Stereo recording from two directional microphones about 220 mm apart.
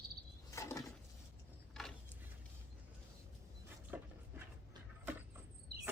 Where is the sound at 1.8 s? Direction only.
Centre (ahead or behind).